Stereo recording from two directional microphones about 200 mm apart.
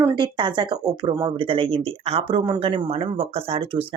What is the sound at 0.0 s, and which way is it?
Speech, 20° right (ahead or behind).